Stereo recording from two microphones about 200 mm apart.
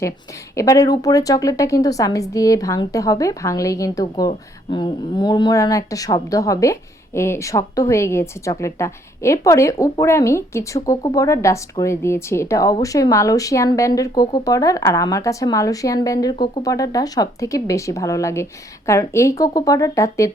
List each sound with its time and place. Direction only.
0.5 s a woman's voice: 15° left (ahead or behind)